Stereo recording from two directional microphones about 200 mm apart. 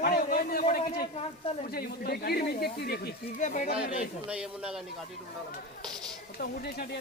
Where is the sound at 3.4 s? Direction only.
40° left (ahead or behind).